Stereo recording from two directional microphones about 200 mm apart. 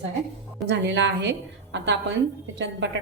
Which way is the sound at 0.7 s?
65° right (ahead or behind).